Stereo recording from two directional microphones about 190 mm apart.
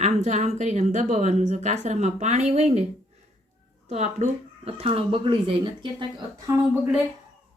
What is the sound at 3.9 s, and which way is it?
Speech, 35° right (ahead or behind).